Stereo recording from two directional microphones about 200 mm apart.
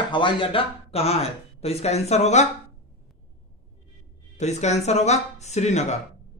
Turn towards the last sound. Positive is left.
turn(degrees=35)  # may be behind; listen again after turning